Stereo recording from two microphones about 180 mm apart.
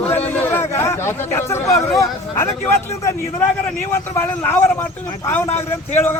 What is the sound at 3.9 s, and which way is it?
Speech, 15° left (ahead or behind).